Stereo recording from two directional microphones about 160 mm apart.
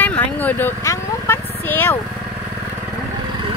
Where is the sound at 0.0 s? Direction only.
10° left (ahead or behind).